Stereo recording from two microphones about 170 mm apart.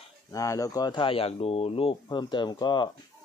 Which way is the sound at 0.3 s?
20° left (ahead or behind).